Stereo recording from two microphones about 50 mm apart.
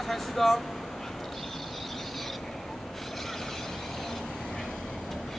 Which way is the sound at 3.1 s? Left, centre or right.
Centre.